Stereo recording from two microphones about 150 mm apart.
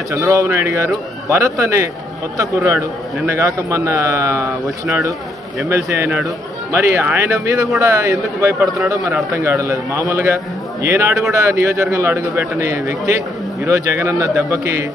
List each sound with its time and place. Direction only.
0.1 s a man's voice: 20° right (ahead or behind)
4.6 s speech: 5° right (ahead or behind)
5.7 s a man's voice: 15° right (ahead or behind)